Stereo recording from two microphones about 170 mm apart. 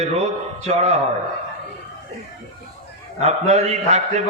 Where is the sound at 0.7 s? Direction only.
40° right (ahead or behind).